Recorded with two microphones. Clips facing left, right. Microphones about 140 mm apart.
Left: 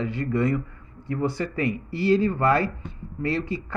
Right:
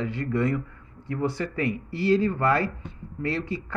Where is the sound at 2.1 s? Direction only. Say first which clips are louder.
Left 2 dB; 20° left (ahead or behind).